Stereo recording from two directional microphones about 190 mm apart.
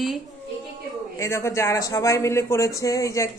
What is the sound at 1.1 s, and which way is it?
A woman's voice, 15° left (ahead or behind).